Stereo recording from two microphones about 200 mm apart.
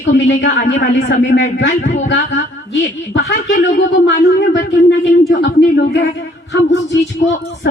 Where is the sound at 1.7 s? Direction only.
35° left (ahead or behind).